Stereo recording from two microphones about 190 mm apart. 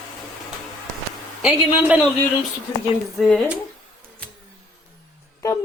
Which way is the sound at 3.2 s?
Centre (ahead or behind).